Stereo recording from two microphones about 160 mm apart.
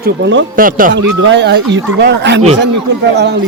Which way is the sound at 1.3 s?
90° right.